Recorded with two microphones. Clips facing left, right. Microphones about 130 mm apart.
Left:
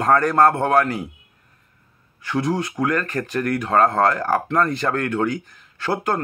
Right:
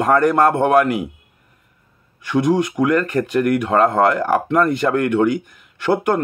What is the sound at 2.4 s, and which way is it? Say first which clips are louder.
Speech: right 6 dB; 15° right (ahead or behind).